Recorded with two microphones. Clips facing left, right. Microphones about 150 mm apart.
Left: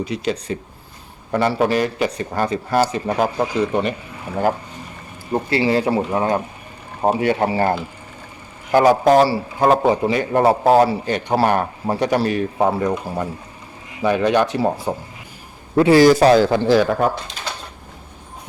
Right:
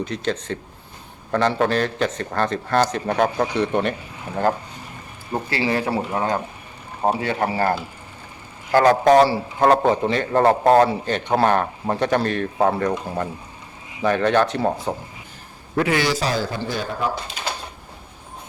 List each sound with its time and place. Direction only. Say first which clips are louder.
0.0 s a man's voice: left 2 dB; 10° left (ahead or behind)
5.5 s speech: left 5 dB; 25° left (ahead or behind)
8.7 s a man's voice: left 1 dB; 10° left (ahead or behind)
14.0 s a man's voice: left 2 dB; 10° left (ahead or behind)
15.7 s speech: left 9 dB; 30° left (ahead or behind)
16.0 s a man's voice: left 11 dB; 60° left (ahead or behind); by 17.0 s 80° left